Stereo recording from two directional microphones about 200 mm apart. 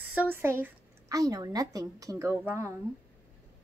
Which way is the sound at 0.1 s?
10° right (ahead or behind).